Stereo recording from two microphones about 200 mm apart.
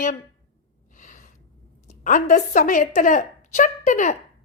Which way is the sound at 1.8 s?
40° left (ahead or behind).